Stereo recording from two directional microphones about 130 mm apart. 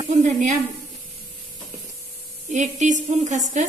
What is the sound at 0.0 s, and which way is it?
Speech, 65° right (ahead or behind).